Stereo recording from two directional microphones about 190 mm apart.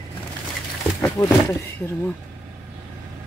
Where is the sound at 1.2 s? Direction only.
20° left (ahead or behind).